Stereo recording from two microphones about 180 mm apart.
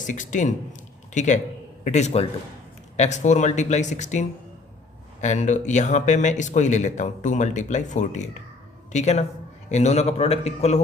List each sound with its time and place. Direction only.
0.0 s a man's voice: 45° left (ahead or behind)